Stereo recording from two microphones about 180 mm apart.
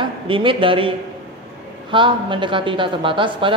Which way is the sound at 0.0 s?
30° right (ahead or behind).